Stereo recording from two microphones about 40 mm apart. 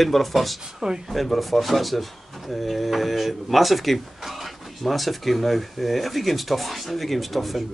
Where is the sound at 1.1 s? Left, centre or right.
Centre.